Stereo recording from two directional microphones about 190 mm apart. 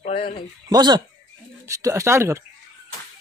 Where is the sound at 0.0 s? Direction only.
35° left (ahead or behind).